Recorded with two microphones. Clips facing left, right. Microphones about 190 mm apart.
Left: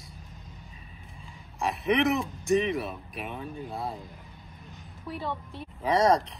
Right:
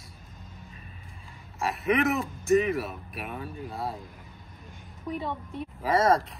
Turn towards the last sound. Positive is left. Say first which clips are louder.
# even
turn(degrees=0)  # may be behind; listen again after turning